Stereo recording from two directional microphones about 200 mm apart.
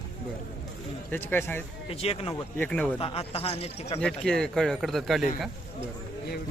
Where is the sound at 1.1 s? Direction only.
10° left (ahead or behind).